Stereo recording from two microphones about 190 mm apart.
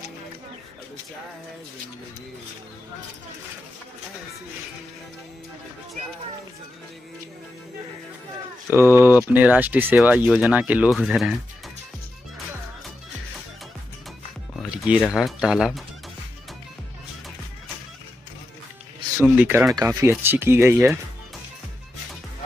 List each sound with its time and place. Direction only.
8.7 s speech: 10° right (ahead or behind)
14.5 s music: centre (ahead or behind)
15.1 s speech: centre (ahead or behind)
19.2 s speech: 10° right (ahead or behind)